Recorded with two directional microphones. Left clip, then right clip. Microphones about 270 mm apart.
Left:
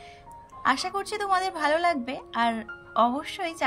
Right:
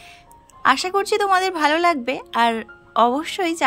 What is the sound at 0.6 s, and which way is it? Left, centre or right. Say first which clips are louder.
Speech: right 8 dB; centre.